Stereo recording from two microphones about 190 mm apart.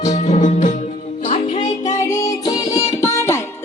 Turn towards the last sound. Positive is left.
turn(degrees=15)  # may be behind; listen again after turning